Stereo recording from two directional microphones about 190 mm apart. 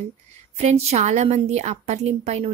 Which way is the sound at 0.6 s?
35° right (ahead or behind).